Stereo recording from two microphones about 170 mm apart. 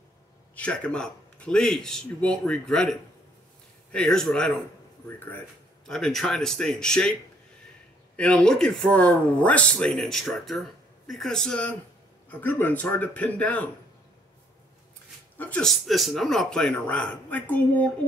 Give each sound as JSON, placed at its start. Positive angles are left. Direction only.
{"t": 0.6, "sound": "speech", "side_deg": 5}
{"t": 8.2, "sound": "a man's voice", "side_deg": 5}
{"t": 15.3, "sound": "speech", "side_deg": 10}